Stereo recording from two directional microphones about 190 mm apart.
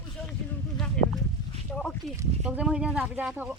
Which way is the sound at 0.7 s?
5° left (ahead or behind).